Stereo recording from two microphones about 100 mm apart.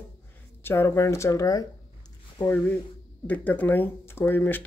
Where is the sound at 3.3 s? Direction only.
15° left (ahead or behind).